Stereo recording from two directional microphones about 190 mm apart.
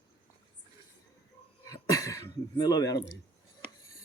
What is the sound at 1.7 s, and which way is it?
Throat clearing, 15° left (ahead or behind).